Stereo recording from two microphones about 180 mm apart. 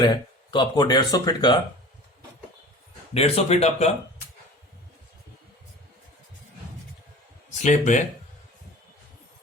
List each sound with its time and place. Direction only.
0.0 s speech: 25° left (ahead or behind)
3.2 s speech: 35° left (ahead or behind)
7.6 s speech: 40° left (ahead or behind)